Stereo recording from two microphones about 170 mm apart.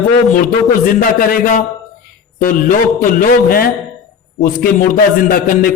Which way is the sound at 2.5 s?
55° left (ahead or behind).